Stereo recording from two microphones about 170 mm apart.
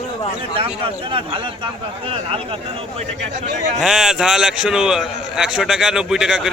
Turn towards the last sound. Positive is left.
turn(degrees=-5)  # may be behind; listen again after turning